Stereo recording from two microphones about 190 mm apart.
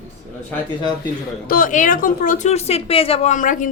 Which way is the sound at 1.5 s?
45° left (ahead or behind).